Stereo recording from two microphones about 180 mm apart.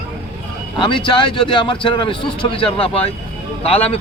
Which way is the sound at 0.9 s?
25° left (ahead or behind).